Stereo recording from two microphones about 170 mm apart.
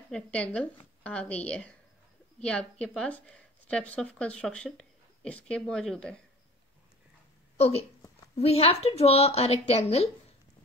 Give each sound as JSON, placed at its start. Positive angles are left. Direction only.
{"t": 0.1, "sound": "speech", "side_deg": 5}
{"t": 7.5, "sound": "a woman's voice", "side_deg": 35}